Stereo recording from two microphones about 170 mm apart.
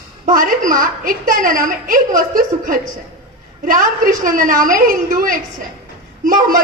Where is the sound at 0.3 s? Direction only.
50° right (ahead or behind).